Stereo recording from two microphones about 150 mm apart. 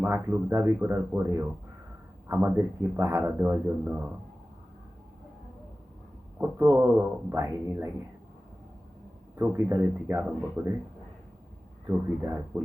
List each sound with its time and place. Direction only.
0.0 s speech: 15° right (ahead or behind)
6.4 s speech: 20° right (ahead or behind)
9.4 s speech: 15° right (ahead or behind)
12.2 s speech: 15° right (ahead or behind)